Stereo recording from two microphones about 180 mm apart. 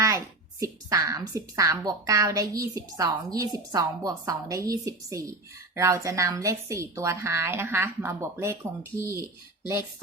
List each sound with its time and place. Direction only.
0.6 s a woman's voice: 20° right (ahead or behind)